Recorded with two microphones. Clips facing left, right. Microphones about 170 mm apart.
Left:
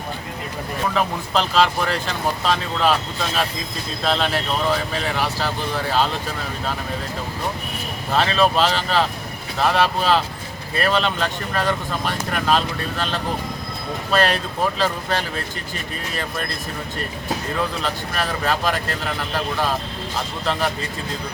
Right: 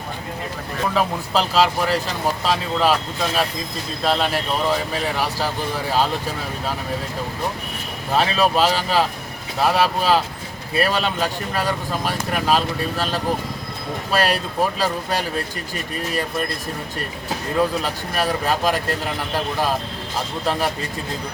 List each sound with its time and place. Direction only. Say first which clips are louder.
0.9 s speech: right 1 dB; 5° right (ahead or behind)
4.0 s speech: right 1 dB; 5° right (ahead or behind)
8.1 s speech: even; 10° right (ahead or behind)
17.8 s speech: right 2 dB; 10° right (ahead or behind)